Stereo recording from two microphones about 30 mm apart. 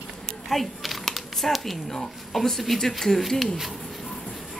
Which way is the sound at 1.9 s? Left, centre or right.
Centre.